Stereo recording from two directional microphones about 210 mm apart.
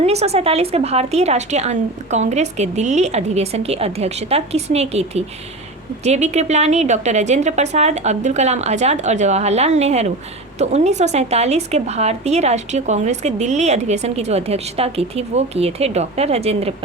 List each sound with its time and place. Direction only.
0.0 s a woman's voice: 30° right (ahead or behind)